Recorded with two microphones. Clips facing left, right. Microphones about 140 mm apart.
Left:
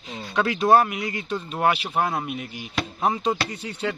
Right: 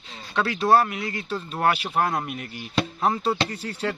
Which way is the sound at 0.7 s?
15° left (ahead or behind).